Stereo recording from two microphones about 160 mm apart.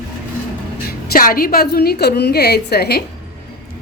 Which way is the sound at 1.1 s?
65° left (ahead or behind).